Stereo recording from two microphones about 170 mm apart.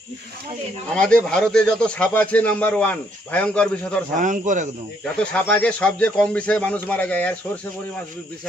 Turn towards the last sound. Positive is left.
turn(degrees=10)  # may be behind; listen again after turning